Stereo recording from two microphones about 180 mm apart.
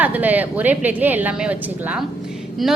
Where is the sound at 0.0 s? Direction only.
10° right (ahead or behind).